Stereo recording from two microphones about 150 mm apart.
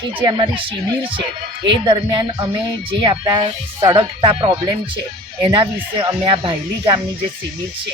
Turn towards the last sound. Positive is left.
turn(degrees=-35)  # may be behind; listen again after turning